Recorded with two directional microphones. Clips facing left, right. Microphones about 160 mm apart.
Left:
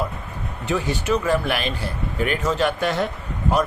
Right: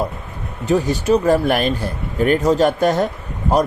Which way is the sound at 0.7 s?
40° right (ahead or behind).